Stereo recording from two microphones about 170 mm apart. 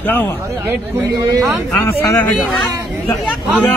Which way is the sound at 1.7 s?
15° left (ahead or behind).